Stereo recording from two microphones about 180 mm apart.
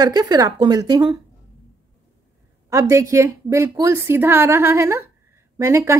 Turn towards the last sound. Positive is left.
turn(degrees=-15)  # may be behind; listen again after turning